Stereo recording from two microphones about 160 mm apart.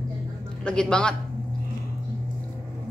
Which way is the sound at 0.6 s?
5° left (ahead or behind).